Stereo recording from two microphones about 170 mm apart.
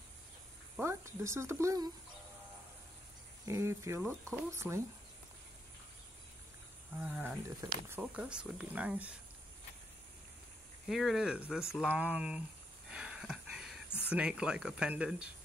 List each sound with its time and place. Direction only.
0.7 s speech: 15° right (ahead or behind)
3.4 s speech: 15° right (ahead or behind)
7.0 s speech: 5° right (ahead or behind)
10.9 s speech: centre (ahead or behind)
12.9 s a sound: 5° right (ahead or behind)
13.8 s a sound: 15° left (ahead or behind)
14.1 s speech: 5° right (ahead or behind)